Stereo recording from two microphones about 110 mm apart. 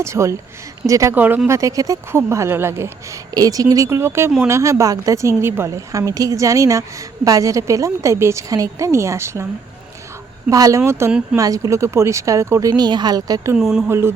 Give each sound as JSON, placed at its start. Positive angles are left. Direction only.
{"t": 0.0, "sound": "speech", "side_deg": -25}
{"t": 1.1, "sound": "speech", "side_deg": -15}
{"t": 1.5, "sound": "speech", "side_deg": -30}
{"t": 10.5, "sound": "a woman's voice", "side_deg": -30}
{"t": 13.6, "sound": "speech", "side_deg": -5}
{"t": 13.8, "sound": "speech", "side_deg": -20}